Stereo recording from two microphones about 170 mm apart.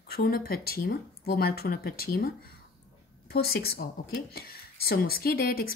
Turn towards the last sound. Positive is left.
turn(degrees=60)  # may be behind; listen again after turning